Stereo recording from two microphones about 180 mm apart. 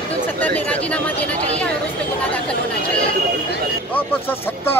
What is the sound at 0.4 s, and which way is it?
Speech, 10° left (ahead or behind).